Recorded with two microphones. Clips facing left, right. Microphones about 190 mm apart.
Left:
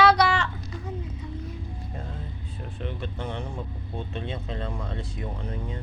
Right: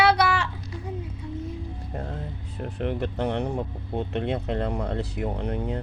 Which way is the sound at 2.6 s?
70° right (ahead or behind).